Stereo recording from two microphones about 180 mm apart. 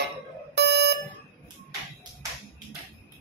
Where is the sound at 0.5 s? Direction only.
70° right (ahead or behind).